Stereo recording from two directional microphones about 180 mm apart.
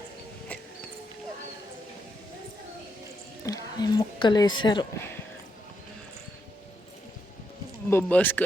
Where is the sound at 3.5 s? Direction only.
20° left (ahead or behind).